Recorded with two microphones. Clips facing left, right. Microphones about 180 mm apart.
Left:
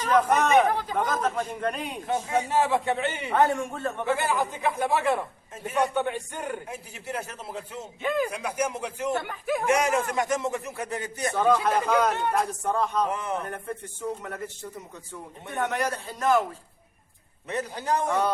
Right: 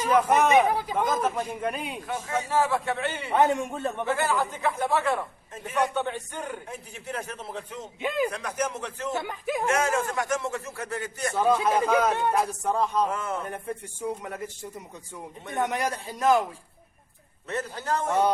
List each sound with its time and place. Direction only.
0.0 s a man's voice: 10° right (ahead or behind)
2.0 s speech: 20° left (ahead or behind)
3.2 s a man's voice: 20° right (ahead or behind)
4.0 s a man's voice: 15° left (ahead or behind)
11.6 s a man's voice: 10° right (ahead or behind)
13.1 s a man's voice: 15° left (ahead or behind)
13.5 s a man's voice: 10° right (ahead or behind)
17.5 s a man's voice: 15° left (ahead or behind)